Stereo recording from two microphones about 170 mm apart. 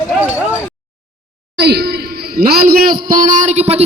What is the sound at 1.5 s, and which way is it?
A man's voice, 75° right (ahead or behind).